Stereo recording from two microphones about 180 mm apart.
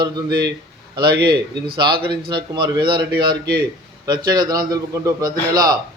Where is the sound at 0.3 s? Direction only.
60° right (ahead or behind).